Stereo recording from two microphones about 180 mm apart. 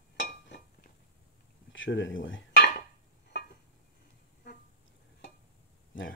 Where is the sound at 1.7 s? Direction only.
90° left.